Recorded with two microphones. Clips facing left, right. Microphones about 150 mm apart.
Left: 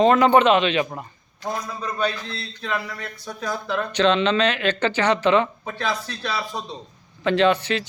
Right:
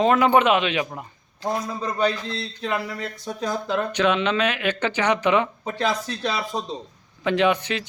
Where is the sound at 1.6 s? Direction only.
25° right (ahead or behind).